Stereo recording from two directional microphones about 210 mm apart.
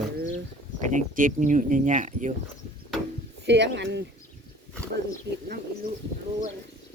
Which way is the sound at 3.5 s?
55° right (ahead or behind).